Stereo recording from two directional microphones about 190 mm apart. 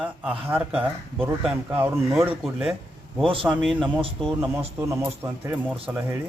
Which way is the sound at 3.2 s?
25° right (ahead or behind).